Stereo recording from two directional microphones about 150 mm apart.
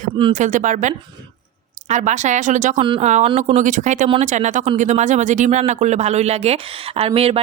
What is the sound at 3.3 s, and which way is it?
Speech, 50° right (ahead or behind).